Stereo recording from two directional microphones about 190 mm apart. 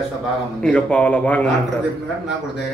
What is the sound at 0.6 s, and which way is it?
Speech, 5° left (ahead or behind).